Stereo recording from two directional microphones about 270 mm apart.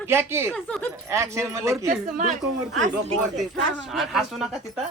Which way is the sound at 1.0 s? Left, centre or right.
Centre.